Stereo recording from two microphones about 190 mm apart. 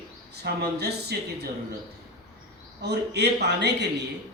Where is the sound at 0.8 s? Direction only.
60° right (ahead or behind).